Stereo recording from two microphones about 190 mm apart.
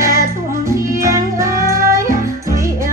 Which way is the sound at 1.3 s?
15° right (ahead or behind).